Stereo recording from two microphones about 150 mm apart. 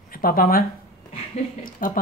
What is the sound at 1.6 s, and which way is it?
Speech, 70° left (ahead or behind).